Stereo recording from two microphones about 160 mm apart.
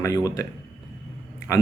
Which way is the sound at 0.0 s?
20° left (ahead or behind).